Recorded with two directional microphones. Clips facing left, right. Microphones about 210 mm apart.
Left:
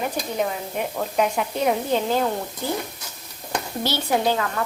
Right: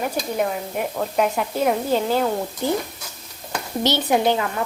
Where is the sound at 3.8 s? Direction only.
20° right (ahead or behind).